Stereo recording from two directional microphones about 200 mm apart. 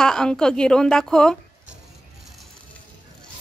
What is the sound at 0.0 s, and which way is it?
Speech, 5° left (ahead or behind).